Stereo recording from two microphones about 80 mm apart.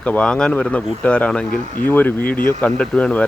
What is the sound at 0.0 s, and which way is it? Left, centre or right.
Speech, centre.